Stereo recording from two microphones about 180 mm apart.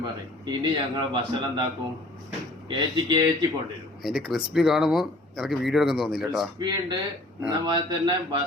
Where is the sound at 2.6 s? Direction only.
25° right (ahead or behind).